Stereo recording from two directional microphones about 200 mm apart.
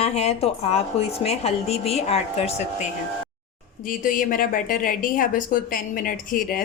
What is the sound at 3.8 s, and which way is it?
A woman's voice, 45° left (ahead or behind).